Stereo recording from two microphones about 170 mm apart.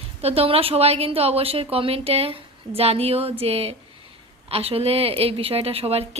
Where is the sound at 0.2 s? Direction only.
35° right (ahead or behind).